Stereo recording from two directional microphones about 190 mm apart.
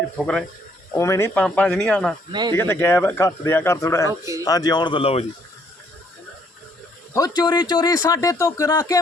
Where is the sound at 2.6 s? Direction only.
15° left (ahead or behind); by 5.2 s 30° left (ahead or behind).